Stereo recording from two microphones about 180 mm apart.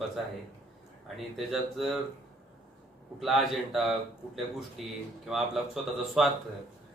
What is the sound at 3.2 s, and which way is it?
A man's voice, centre (ahead or behind).